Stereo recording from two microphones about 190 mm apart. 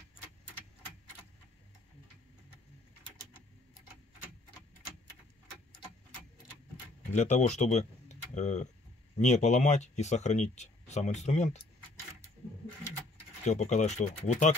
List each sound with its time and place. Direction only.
7.1 s speech: 40° left (ahead or behind)
13.4 s speech: 35° left (ahead or behind)